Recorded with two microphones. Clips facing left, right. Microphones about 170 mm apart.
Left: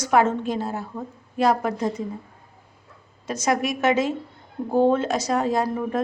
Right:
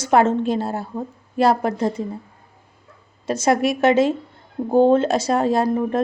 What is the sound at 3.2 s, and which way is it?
A woman's voice, 30° right (ahead or behind).